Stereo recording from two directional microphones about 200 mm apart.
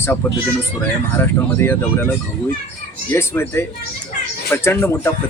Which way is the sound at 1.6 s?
10° left (ahead or behind).